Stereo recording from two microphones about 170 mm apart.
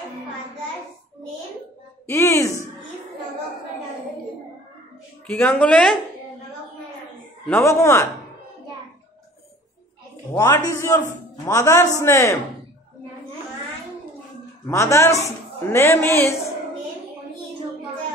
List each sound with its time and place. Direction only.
2.0 s speech: 15° left (ahead or behind)
5.2 s speech: 10° left (ahead or behind)
7.4 s speech: 15° left (ahead or behind)
10.3 s speech: 15° left (ahead or behind)
14.7 s speech: 15° left (ahead or behind)